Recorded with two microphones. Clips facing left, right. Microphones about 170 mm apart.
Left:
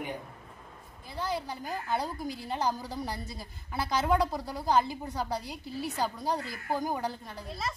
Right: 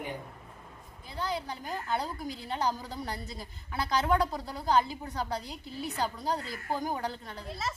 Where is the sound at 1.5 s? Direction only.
10° left (ahead or behind).